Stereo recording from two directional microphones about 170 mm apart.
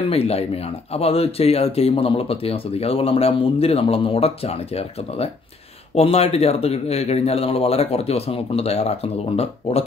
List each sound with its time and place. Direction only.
0.1 s speech: 35° left (ahead or behind)